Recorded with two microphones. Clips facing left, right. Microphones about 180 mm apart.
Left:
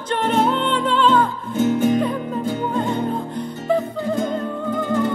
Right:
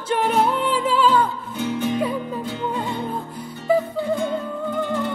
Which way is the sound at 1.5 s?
45° left (ahead or behind).